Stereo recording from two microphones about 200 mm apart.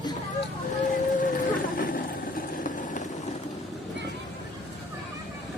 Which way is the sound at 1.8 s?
45° left (ahead or behind).